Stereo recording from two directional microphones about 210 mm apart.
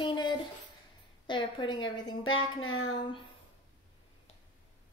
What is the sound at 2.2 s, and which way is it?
Speech, 70° left (ahead or behind).